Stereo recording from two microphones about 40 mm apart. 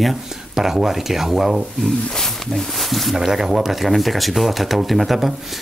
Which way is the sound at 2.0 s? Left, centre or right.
Centre.